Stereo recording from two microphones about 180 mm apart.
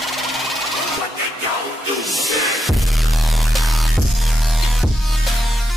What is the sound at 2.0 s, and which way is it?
Music, centre (ahead or behind).